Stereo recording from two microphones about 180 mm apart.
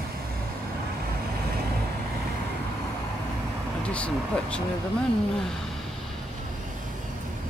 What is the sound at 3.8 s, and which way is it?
Speech, 5° left (ahead or behind).